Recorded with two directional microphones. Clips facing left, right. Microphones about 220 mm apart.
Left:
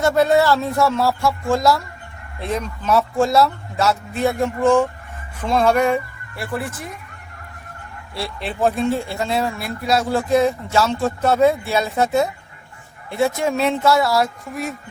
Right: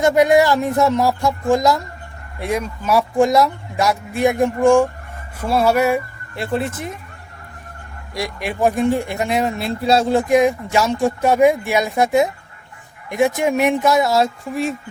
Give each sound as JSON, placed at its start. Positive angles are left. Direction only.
{"t": 0.0, "sound": "speech", "side_deg": -15}
{"t": 6.3, "sound": "speech", "side_deg": -20}
{"t": 8.1, "sound": "speech", "side_deg": -15}